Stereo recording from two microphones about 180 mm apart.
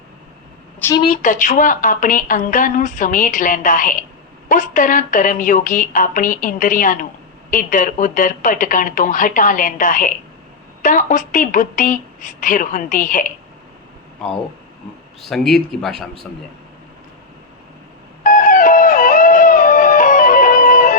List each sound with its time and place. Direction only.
1.0 s a woman's voice: 45° left (ahead or behind)
15.2 s speech: centre (ahead or behind)
18.2 s music: 45° left (ahead or behind)